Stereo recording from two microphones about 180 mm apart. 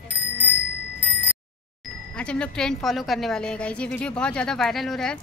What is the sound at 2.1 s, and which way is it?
A woman's voice, 5° left (ahead or behind).